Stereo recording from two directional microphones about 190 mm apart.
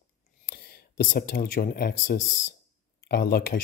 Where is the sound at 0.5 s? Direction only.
55° left (ahead or behind).